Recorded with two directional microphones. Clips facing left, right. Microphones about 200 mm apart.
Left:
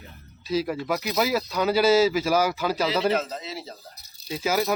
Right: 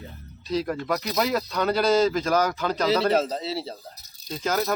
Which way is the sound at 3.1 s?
35° right (ahead or behind).